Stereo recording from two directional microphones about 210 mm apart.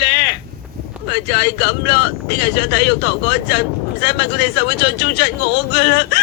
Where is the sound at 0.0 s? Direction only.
50° left (ahead or behind).